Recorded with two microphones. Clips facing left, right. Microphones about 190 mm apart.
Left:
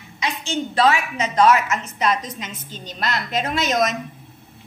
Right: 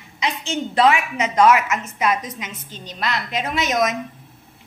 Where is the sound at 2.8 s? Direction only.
40° left (ahead or behind).